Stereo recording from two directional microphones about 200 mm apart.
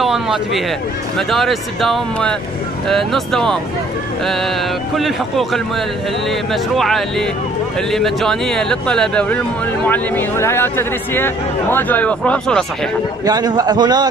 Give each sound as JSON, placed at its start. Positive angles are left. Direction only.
{"t": 0.0, "sound": "a sound", "side_deg": 0}
{"t": 1.1, "sound": "speech", "side_deg": 0}
{"t": 4.9, "sound": "speech", "side_deg": 0}
{"t": 13.2, "sound": "a man's voice", "side_deg": -20}